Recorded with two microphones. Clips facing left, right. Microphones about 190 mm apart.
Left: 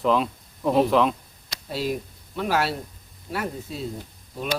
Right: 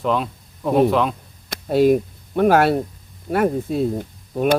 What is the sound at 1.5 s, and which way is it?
Speech, 55° right (ahead or behind).